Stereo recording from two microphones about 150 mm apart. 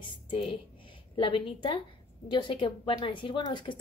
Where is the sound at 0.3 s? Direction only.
40° left (ahead or behind).